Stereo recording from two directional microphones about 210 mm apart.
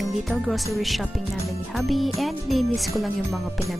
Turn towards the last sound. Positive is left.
turn(degrees=0)  # may be behind; listen again after turning